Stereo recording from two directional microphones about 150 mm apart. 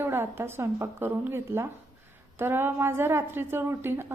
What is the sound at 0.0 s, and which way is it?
A woman's voice, 15° right (ahead or behind).